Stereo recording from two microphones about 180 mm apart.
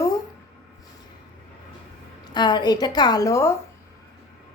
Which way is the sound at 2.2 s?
25° left (ahead or behind).